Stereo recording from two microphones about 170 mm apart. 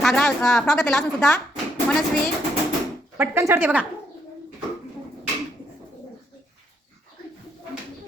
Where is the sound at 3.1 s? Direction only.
10° right (ahead or behind).